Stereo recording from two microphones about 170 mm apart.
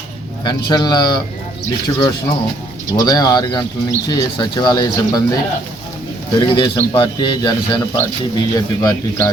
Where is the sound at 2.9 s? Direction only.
20° left (ahead or behind).